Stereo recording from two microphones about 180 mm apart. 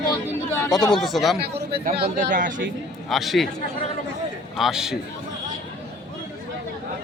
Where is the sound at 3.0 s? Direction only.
Centre (ahead or behind).